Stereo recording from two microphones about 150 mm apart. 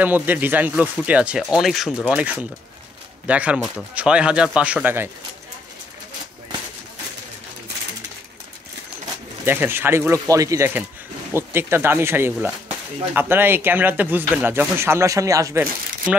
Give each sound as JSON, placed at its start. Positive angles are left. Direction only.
{"t": 0.0, "sound": "speech", "side_deg": -10}
{"t": 9.4, "sound": "speech", "side_deg": -15}